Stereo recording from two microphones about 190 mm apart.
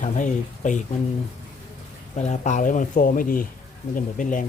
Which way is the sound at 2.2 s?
40° left (ahead or behind).